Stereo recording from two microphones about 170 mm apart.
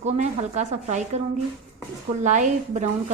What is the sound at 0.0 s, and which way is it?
Speech, 40° right (ahead or behind).